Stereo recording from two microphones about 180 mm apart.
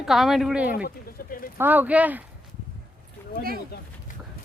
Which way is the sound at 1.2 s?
55° left (ahead or behind).